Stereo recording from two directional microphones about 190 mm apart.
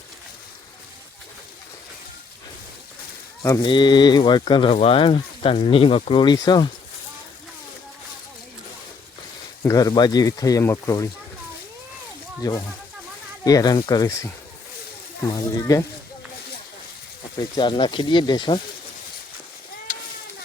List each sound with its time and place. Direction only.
3.4 s speech: 20° left (ahead or behind)
9.6 s speech: 20° left (ahead or behind)
12.4 s speech: 20° left (ahead or behind)
15.6 s speech: 15° left (ahead or behind)
17.6 s speech: 25° left (ahead or behind)
19.9 s a sound: 45° left (ahead or behind)